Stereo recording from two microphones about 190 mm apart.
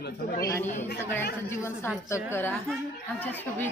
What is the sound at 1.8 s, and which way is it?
Speech, 10° left (ahead or behind).